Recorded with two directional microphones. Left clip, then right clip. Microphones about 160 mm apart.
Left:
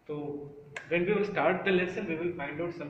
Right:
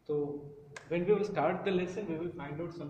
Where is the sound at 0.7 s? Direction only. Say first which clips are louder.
Left 2 dB; 35° right (ahead or behind).